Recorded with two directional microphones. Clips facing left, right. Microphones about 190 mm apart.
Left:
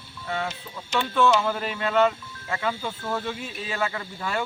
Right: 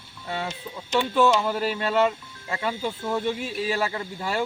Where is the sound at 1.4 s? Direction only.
10° right (ahead or behind).